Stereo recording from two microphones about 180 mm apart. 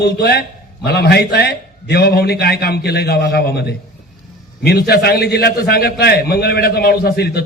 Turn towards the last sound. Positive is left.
turn(degrees=60)  # may be behind; listen again after turning